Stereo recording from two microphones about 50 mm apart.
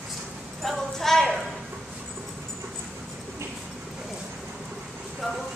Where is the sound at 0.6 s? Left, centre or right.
Centre.